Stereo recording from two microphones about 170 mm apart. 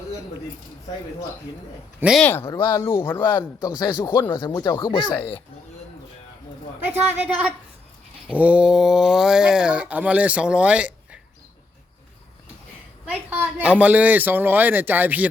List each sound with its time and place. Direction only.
2.0 s speech: 5° right (ahead or behind)
2.2 s a man's voice: 10° left (ahead or behind)
3.2 s speech: 25° left (ahead or behind)
6.8 s speech: 10° right (ahead or behind)
13.1 s speech: 10° right (ahead or behind)